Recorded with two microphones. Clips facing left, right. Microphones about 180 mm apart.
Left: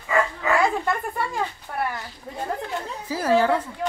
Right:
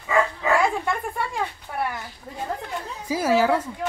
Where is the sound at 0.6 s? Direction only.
Centre (ahead or behind).